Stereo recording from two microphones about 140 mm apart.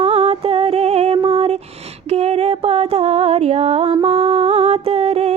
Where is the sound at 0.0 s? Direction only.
45° right (ahead or behind).